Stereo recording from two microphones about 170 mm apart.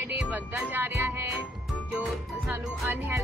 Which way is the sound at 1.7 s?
5° right (ahead or behind).